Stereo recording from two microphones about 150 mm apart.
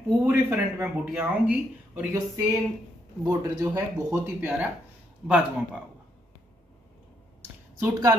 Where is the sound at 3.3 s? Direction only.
20° right (ahead or behind).